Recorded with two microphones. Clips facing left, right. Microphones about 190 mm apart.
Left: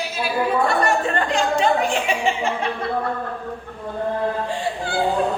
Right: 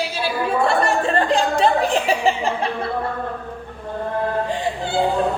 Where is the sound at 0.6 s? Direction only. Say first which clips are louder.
Right 1 dB; 30° right (ahead or behind).